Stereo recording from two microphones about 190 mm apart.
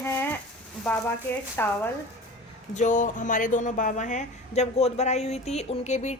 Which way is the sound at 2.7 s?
40° left (ahead or behind).